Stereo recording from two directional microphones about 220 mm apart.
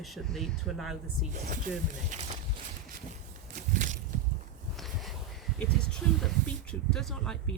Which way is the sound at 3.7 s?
35° right (ahead or behind).